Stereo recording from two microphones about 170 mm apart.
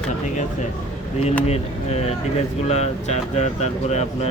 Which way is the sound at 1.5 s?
40° left (ahead or behind).